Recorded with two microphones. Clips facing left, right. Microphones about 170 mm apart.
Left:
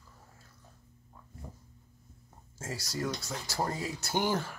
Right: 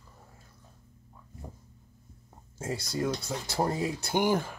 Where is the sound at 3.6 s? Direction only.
15° right (ahead or behind).